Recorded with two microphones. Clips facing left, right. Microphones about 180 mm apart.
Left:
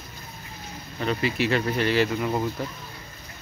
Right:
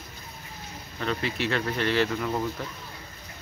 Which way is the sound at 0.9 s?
10° left (ahead or behind).